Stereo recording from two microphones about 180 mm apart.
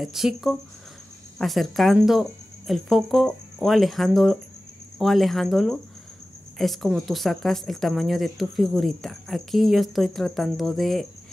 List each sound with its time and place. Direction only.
0.0 s speech: centre (ahead or behind)